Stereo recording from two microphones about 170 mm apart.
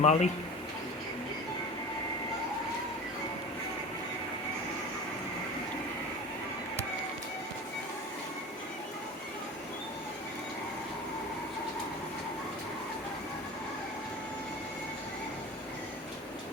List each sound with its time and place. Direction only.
0.0 s speech: 40° left (ahead or behind)